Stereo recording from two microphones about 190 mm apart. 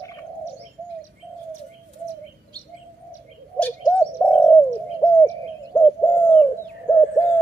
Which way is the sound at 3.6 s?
10° left (ahead or behind).